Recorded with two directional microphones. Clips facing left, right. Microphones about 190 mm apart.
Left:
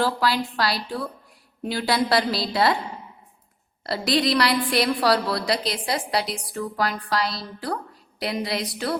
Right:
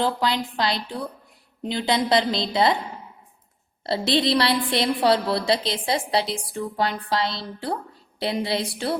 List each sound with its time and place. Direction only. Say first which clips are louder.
0.0 s a woman's voice: left 1 dB; 20° right (ahead or behind)
3.8 s a woman's voice: right 1 dB; 25° right (ahead or behind)